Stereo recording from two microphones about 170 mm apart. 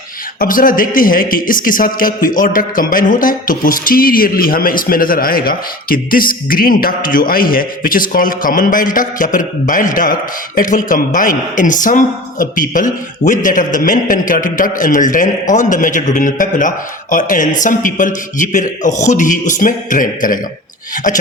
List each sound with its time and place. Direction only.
0.3 s a man's voice: 55° left (ahead or behind)